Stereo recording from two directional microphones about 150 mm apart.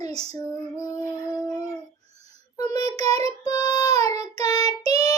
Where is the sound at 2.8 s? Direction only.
25° left (ahead or behind).